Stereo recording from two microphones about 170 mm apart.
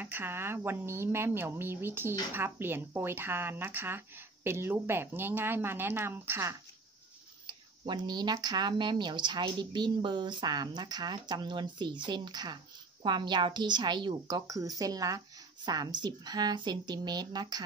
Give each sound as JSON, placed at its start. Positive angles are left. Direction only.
{"t": 0.0, "sound": "speech", "side_deg": -10}
{"t": 7.4, "sound": "speech", "side_deg": -30}